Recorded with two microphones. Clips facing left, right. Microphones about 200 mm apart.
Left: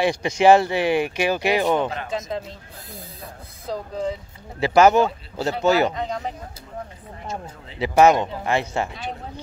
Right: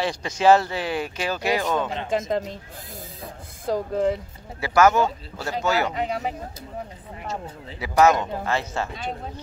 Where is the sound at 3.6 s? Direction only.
50° right (ahead or behind).